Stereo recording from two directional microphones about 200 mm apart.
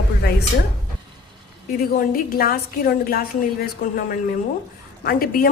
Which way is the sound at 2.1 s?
45° left (ahead or behind).